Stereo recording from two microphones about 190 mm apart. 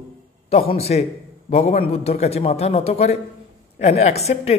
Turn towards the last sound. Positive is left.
turn(degrees=35)  # may be behind; listen again after turning